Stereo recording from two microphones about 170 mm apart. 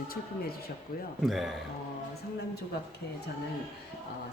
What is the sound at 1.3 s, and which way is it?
Speech, centre (ahead or behind).